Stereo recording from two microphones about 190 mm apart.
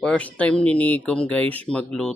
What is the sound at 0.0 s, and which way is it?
Speech, 5° left (ahead or behind).